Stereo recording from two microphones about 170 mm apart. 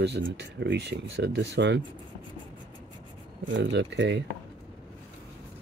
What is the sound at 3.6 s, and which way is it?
Speech, 90° right.